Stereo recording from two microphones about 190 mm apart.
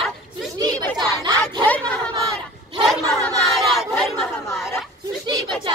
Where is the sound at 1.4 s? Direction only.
5° left (ahead or behind).